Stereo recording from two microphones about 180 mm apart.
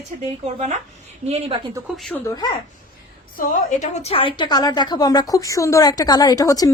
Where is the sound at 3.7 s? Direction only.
35° left (ahead or behind).